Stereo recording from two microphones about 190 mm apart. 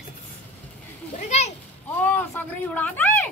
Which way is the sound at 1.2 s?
35° left (ahead or behind).